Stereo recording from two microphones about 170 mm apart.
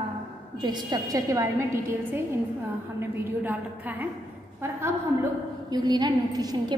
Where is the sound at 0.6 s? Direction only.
25° right (ahead or behind).